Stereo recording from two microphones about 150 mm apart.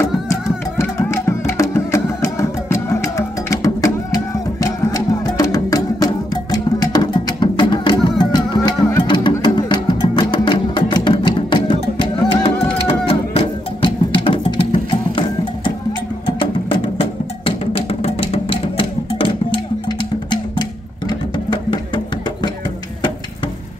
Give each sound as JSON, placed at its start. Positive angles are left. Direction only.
{"t": 0.3, "sound": "music", "side_deg": 20}
{"t": 17.0, "sound": "music", "side_deg": 40}